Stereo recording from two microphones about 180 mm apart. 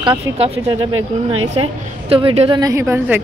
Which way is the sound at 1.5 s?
30° right (ahead or behind).